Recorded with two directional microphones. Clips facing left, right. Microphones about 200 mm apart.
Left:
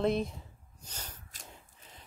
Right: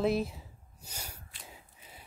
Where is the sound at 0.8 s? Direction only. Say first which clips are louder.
Right 1 dB; 10° right (ahead or behind).